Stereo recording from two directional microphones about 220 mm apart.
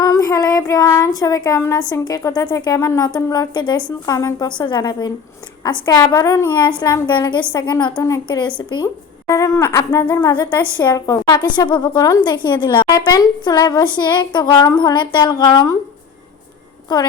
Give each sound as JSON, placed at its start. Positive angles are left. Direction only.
{"t": 0.0, "sound": "child singing", "side_deg": 15}
{"t": 3.2, "sound": "a woman's voice", "side_deg": 15}